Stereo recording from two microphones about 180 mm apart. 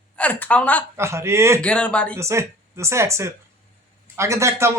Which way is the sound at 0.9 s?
15° right (ahead or behind).